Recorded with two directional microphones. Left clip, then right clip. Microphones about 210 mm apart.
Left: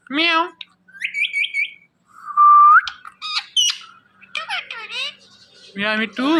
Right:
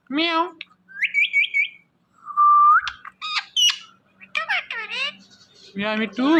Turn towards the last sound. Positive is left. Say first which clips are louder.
# left 1 dB
turn(degrees=-5)  # may be behind; listen again after turning